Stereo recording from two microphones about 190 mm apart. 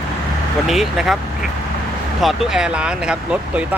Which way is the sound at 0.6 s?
Centre (ahead or behind).